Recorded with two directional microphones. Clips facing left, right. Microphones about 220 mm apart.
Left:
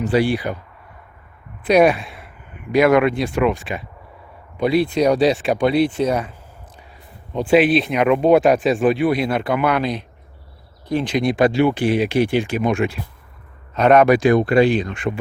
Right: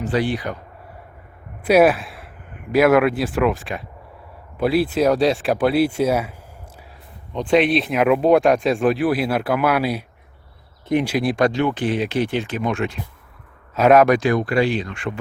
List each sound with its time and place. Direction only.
0.0 s speech: 10° left (ahead or behind)
1.6 s speech: 5° right (ahead or behind)
7.3 s speech: 5° left (ahead or behind)
11.0 s speech: 5° right (ahead or behind); by 13.0 s 10° left (ahead or behind)
13.7 s speech: 5° right (ahead or behind)
14.1 s speech: 15° left (ahead or behind)